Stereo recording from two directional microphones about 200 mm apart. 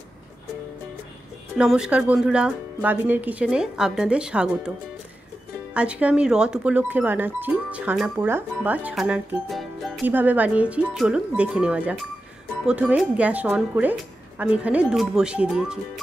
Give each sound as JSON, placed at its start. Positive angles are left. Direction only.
{"t": 1.6, "sound": "speech", "side_deg": -5}